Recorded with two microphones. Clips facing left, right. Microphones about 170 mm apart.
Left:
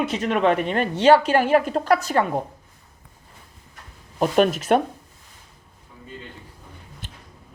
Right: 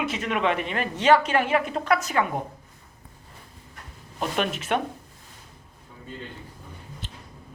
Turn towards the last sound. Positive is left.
turn(degrees=50)  # may be behind; listen again after turning